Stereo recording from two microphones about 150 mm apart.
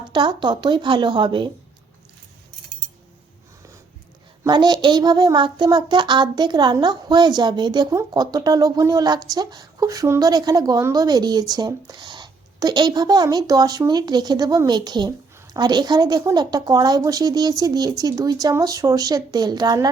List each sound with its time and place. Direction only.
0.1 s a woman's voice: 30° right (ahead or behind)
4.4 s a child's voice: 30° right (ahead or behind)